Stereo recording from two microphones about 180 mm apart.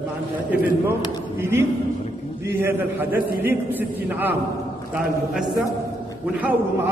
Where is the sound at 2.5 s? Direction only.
10° right (ahead or behind).